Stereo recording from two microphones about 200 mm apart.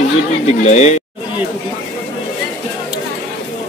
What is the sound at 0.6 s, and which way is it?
Speech, 35° left (ahead or behind).